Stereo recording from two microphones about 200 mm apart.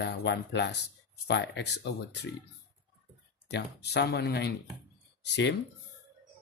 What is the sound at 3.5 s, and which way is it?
Speech, 55° left (ahead or behind).